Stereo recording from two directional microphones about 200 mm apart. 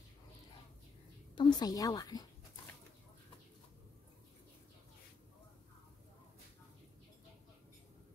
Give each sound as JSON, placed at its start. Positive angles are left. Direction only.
{"t": 1.3, "sound": "a woman's voice", "side_deg": 20}